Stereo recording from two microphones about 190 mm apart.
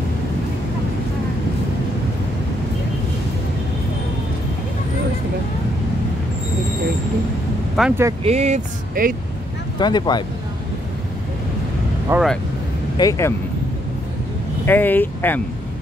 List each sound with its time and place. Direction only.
7.8 s speech: centre (ahead or behind)
8.2 s speech: 35° right (ahead or behind)
9.0 s speech: 45° right (ahead or behind)
9.8 s speech: 20° left (ahead or behind)
12.1 s speech: centre (ahead or behind)
12.9 s speech: 20° left (ahead or behind)
14.7 s speech: 10° left (ahead or behind)